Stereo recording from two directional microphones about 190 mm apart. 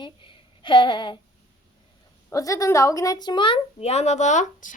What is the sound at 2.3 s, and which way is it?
A woman's voice, 15° left (ahead or behind).